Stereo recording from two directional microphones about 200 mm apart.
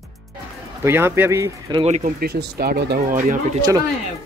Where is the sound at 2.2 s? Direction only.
50° right (ahead or behind).